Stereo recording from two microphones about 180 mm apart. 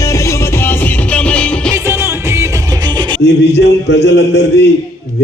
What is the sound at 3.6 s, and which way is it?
Music, 70° left (ahead or behind).